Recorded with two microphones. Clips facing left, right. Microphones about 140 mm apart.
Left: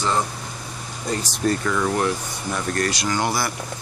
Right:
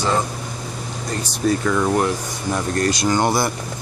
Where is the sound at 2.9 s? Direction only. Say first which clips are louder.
Right 5 dB; 25° right (ahead or behind).